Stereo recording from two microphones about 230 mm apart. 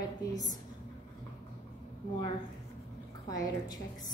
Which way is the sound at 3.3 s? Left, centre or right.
Centre.